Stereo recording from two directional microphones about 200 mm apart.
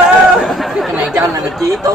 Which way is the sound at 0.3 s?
Centre (ahead or behind).